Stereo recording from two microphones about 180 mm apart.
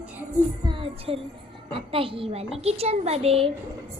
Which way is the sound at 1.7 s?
30° right (ahead or behind).